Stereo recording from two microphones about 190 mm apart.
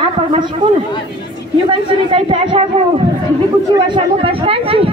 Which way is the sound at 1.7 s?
25° right (ahead or behind).